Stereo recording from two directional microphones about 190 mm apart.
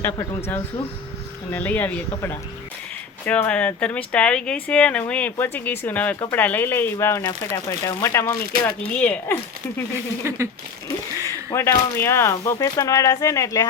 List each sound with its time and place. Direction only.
0.0 s speech: 10° left (ahead or behind)
10.2 s speech: 15° right (ahead or behind)
11.5 s speech: 15° left (ahead or behind)